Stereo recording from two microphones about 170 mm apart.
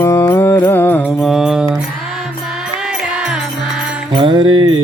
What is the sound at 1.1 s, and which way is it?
Music, centre (ahead or behind).